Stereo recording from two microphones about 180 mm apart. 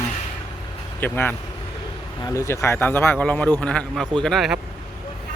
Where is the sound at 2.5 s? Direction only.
15° left (ahead or behind).